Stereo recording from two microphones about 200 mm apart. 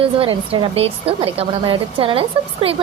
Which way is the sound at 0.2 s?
25° right (ahead or behind).